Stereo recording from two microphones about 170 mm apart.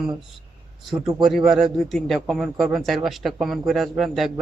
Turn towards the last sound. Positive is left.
turn(degrees=0)  # may be behind; listen again after turning